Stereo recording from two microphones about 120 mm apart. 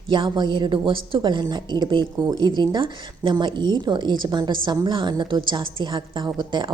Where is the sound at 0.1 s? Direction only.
40° right (ahead or behind).